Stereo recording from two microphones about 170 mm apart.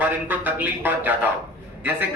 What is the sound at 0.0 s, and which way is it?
Speech, 10° right (ahead or behind).